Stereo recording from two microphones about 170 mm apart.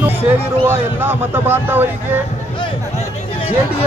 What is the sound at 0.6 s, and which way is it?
Speech, 15° right (ahead or behind).